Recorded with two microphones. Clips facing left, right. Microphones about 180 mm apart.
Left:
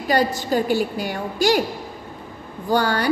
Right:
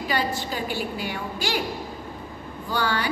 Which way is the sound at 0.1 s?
40° left (ahead or behind).